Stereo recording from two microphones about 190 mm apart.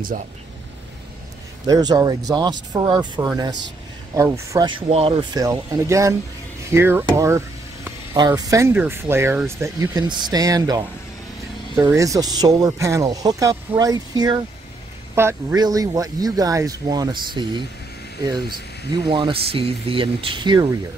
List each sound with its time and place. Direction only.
1.7 s speech: 20° right (ahead or behind)